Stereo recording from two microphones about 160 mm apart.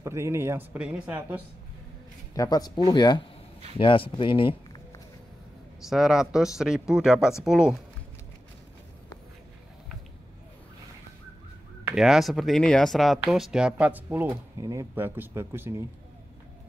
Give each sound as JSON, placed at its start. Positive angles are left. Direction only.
{"t": 0.0, "sound": "speech", "side_deg": -15}
{"t": 2.3, "sound": "speech", "side_deg": 25}
{"t": 5.9, "sound": "speech", "side_deg": -5}
{"t": 11.8, "sound": "speech", "side_deg": -5}